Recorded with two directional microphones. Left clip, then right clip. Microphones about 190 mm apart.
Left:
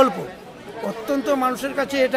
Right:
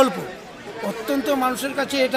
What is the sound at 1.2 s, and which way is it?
Speech, 5° left (ahead or behind).